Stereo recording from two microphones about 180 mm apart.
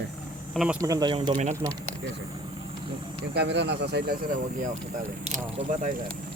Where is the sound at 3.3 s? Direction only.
70° right (ahead or behind).